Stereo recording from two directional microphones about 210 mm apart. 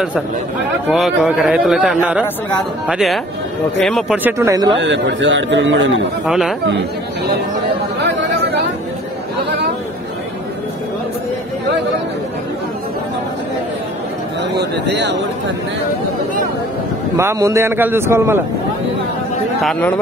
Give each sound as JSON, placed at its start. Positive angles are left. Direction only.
{"t": 0.8, "sound": "a man's voice", "side_deg": 0}
{"t": 4.7, "sound": "a man's voice", "side_deg": -55}
{"t": 6.2, "sound": "speech", "side_deg": 0}
{"t": 14.6, "sound": "speech", "side_deg": -55}
{"t": 17.2, "sound": "a man's voice", "side_deg": -15}
{"t": 19.6, "sound": "speech", "side_deg": 5}